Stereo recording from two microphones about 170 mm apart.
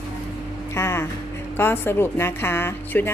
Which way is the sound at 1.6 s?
15° left (ahead or behind).